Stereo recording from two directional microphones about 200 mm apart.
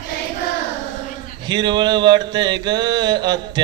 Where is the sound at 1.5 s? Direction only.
20° right (ahead or behind).